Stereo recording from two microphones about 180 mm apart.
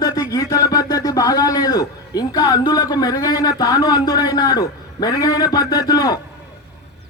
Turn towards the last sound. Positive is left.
turn(degrees=20)  # may be behind; listen again after turning